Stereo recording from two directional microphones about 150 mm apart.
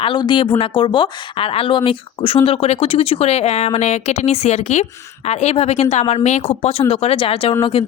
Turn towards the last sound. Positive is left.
turn(degrees=40)  # may be behind; listen again after turning